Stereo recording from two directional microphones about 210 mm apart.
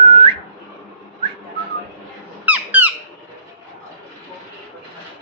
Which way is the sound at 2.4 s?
10° right (ahead or behind).